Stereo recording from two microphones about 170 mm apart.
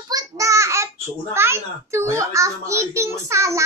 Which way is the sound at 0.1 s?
20° right (ahead or behind).